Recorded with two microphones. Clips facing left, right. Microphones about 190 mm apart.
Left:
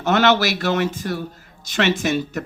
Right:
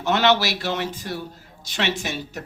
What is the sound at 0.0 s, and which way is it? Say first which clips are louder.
Speech: left 3 dB; 50° left (ahead or behind).